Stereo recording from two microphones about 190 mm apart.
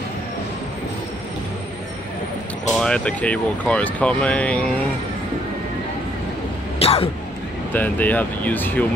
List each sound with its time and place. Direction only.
2.8 s speech: 5° left (ahead or behind)
6.8 s a sound: 30° left (ahead or behind)
7.7 s speech: 10° left (ahead or behind)